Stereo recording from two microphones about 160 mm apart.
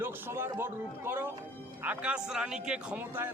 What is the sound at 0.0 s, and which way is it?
A man's voice, 15° right (ahead or behind).